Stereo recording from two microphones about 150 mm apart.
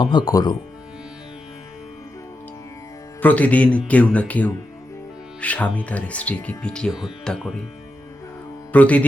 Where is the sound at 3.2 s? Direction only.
10° left (ahead or behind).